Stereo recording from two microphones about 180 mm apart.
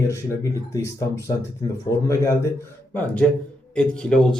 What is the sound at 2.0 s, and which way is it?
Speech, 15° left (ahead or behind).